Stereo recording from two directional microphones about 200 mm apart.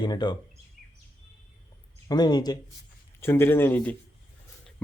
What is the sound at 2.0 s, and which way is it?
Speech, 20° left (ahead or behind).